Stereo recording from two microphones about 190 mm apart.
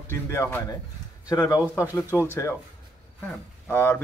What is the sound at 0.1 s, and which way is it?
Speech, 15° left (ahead or behind).